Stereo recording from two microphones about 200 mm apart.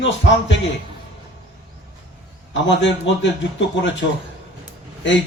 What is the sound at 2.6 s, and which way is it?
A man's voice, 65° left (ahead or behind).